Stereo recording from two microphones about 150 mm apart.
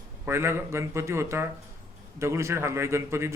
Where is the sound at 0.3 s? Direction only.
15° right (ahead or behind).